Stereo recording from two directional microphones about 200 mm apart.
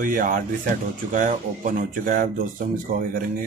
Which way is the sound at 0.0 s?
40° right (ahead or behind).